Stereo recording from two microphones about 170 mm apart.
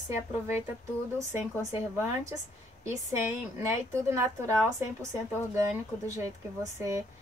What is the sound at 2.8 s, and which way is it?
A woman's voice, 15° right (ahead or behind).